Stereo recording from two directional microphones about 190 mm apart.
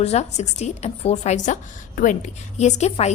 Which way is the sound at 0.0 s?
35° left (ahead or behind).